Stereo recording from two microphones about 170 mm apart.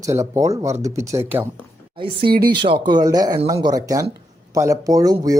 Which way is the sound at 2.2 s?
65° right (ahead or behind).